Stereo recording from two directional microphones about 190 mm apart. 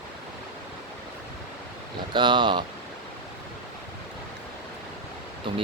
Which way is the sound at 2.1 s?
25° right (ahead or behind).